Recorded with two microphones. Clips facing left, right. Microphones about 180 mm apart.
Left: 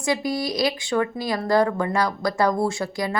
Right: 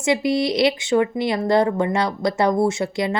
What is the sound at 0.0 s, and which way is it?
Speech, 25° right (ahead or behind).